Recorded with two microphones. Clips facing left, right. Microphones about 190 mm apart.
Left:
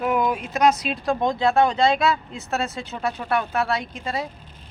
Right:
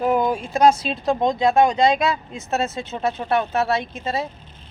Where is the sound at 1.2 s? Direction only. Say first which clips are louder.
Right 2 dB; 20° right (ahead or behind).